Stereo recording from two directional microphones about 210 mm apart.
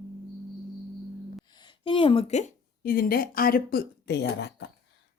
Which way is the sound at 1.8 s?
25° left (ahead or behind).